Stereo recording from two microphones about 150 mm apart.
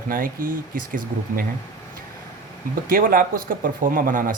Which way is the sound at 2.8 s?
75° right (ahead or behind).